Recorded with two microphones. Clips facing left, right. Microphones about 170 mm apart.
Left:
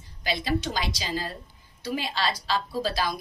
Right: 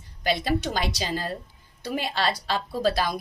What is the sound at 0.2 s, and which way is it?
A woman's voice, 55° right (ahead or behind).